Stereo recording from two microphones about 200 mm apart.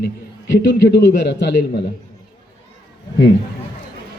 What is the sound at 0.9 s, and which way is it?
Speech, 60° left (ahead or behind).